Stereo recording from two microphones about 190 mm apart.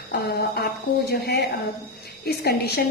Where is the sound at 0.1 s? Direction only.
55° left (ahead or behind).